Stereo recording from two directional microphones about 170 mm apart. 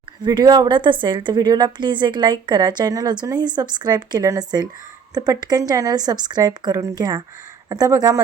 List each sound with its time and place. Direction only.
0.2 s a woman's voice: 25° right (ahead or behind)